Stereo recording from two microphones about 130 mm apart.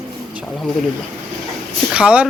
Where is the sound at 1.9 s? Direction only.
10° right (ahead or behind).